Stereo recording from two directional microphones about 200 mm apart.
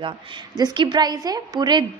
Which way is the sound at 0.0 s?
25° right (ahead or behind).